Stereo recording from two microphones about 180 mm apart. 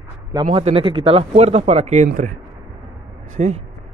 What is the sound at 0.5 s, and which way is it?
Speech, 35° right (ahead or behind).